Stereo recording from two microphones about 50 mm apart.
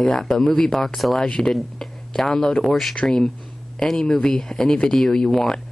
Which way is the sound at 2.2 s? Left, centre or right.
Centre.